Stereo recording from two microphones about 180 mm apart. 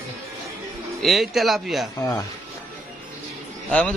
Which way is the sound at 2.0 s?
20° left (ahead or behind).